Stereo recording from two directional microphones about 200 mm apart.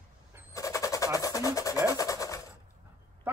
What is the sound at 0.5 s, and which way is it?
Vehicle, 15° left (ahead or behind).